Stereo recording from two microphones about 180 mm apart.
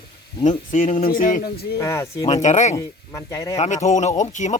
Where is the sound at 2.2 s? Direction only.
40° left (ahead or behind).